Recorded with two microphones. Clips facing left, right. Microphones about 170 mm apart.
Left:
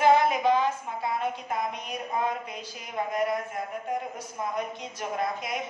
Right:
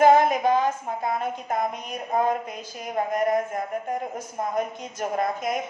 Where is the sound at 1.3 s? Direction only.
45° right (ahead or behind).